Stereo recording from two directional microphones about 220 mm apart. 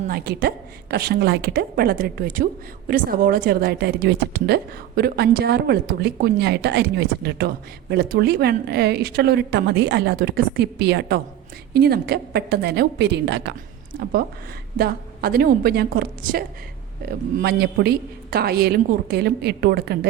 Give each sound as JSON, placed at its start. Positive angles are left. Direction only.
{"t": 0.1, "sound": "a woman's voice", "side_deg": -45}
{"t": 14.8, "sound": "a woman's voice", "side_deg": -45}